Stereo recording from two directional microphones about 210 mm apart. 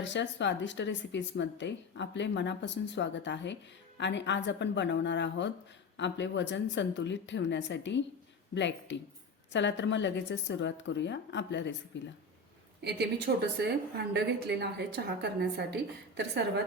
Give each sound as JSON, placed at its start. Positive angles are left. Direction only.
{"t": 0.0, "sound": "speech", "side_deg": 60}
{"t": 12.8, "sound": "a woman's voice", "side_deg": -50}